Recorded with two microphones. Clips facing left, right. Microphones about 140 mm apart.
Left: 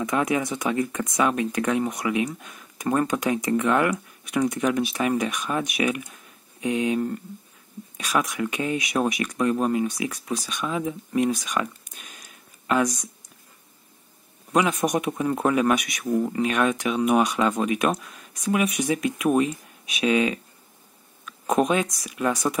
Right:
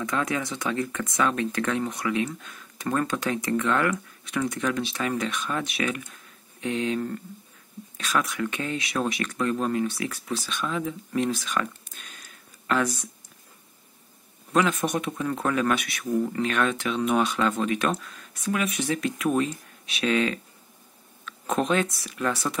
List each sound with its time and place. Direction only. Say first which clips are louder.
0.0 s speech: left 4 dB; 20° left (ahead or behind)
14.8 s speech: left 4 dB; 20° left (ahead or behind)
21.3 s a sound: left 3 dB; 10° left (ahead or behind)
22.1 s speech: left 4 dB; 15° left (ahead or behind)